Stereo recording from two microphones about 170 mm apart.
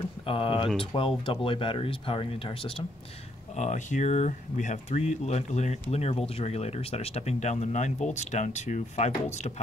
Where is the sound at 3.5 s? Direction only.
45° left (ahead or behind).